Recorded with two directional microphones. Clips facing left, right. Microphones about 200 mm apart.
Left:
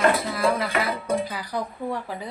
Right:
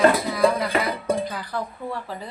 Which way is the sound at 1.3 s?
10° left (ahead or behind).